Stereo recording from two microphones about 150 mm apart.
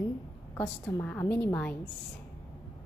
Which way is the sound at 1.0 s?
10° left (ahead or behind).